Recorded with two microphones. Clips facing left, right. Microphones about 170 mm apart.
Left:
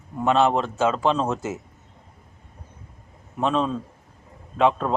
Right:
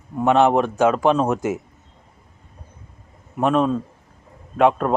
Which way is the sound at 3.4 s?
10° right (ahead or behind).